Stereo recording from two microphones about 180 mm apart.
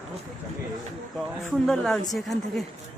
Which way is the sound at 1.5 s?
5° left (ahead or behind).